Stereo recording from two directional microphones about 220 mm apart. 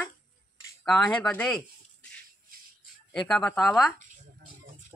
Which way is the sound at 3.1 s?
Centre (ahead or behind).